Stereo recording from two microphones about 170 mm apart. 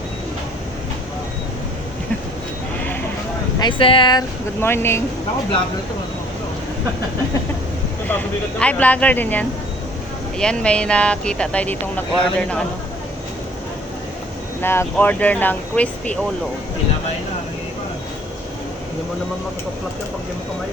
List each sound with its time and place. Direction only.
3.6 s speech: 30° left (ahead or behind)
4.6 s speech: 15° left (ahead or behind)
8.0 s speech: 10° left (ahead or behind)
14.6 s speech: 15° left (ahead or behind)